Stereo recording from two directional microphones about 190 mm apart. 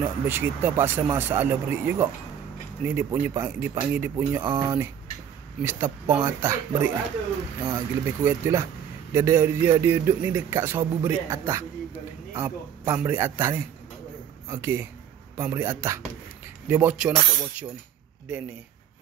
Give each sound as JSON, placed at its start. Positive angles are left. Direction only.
{"t": 0.0, "sound": "a man's voice", "side_deg": -10}
{"t": 4.4, "sound": "speech", "side_deg": -25}
{"t": 5.6, "sound": "a man's voice", "side_deg": -10}